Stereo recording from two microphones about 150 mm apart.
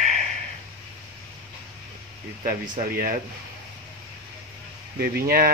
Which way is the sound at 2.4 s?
65° right (ahead or behind).